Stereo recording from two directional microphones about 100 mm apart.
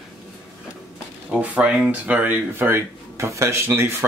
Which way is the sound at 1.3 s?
10° right (ahead or behind).